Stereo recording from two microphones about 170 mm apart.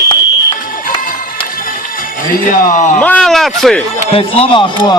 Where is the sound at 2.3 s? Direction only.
50° left (ahead or behind).